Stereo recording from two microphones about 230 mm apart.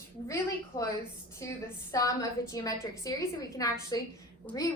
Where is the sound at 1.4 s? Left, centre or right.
Centre.